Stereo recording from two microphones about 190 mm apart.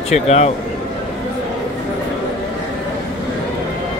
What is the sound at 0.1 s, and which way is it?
Speech, 35° left (ahead or behind).